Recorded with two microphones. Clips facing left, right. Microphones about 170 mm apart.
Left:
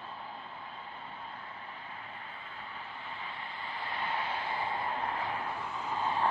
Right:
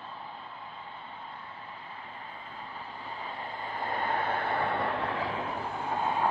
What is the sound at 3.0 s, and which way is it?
Vehicle, 40° right (ahead or behind).